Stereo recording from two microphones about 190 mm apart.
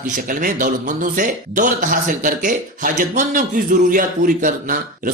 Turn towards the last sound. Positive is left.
turn(degrees=-45)  # may be behind; listen again after turning